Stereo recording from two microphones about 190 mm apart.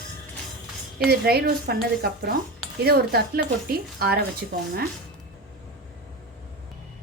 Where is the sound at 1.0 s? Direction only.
55° right (ahead or behind).